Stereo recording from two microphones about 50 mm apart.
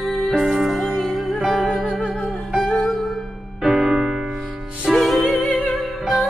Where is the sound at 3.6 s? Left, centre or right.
Centre.